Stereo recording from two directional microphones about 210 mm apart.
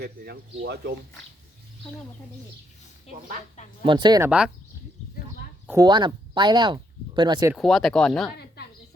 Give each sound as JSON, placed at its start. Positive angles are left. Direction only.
{"t": 0.6, "sound": "speech", "side_deg": -50}
{"t": 3.8, "sound": "speech", "side_deg": -20}
{"t": 4.3, "sound": "speech", "side_deg": -5}
{"t": 5.6, "sound": "speech", "side_deg": -15}
{"t": 7.5, "sound": "speech", "side_deg": 0}